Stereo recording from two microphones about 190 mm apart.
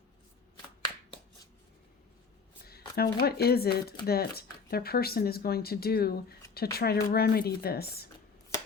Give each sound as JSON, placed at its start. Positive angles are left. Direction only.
{"t": 2.6, "sound": "speech", "side_deg": 55}